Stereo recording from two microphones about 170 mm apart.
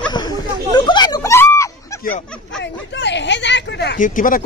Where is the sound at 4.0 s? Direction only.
50° left (ahead or behind).